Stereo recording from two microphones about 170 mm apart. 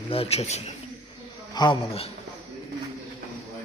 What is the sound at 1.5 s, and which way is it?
Speech, 25° left (ahead or behind).